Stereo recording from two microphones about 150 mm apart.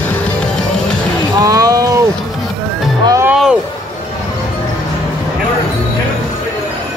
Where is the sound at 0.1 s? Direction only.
10° left (ahead or behind).